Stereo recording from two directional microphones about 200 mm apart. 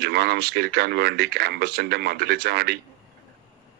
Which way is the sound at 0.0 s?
55° right (ahead or behind).